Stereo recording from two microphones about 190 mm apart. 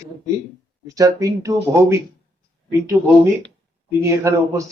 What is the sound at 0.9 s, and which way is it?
A man's voice, 15° right (ahead or behind).